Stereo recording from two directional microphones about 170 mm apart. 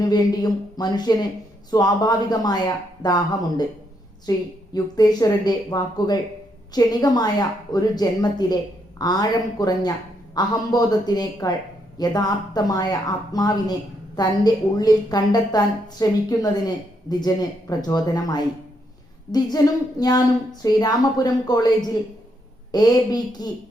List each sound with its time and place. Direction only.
0.0 s a woman's voice: 20° left (ahead or behind)